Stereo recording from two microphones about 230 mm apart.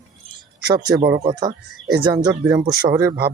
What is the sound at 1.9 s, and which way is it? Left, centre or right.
Speech, centre.